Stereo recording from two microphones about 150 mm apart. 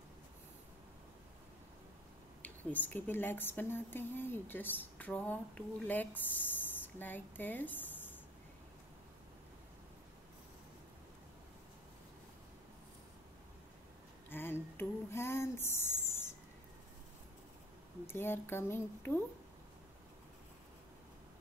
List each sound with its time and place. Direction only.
2.4 s a woman's voice: 10° left (ahead or behind)
14.3 s a sound: 15° left (ahead or behind)
18.0 s a woman's voice: 15° left (ahead or behind)